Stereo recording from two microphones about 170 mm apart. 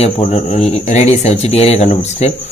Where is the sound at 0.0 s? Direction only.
40° left (ahead or behind).